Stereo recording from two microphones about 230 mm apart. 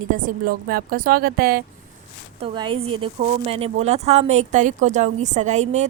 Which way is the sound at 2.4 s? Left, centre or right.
Right.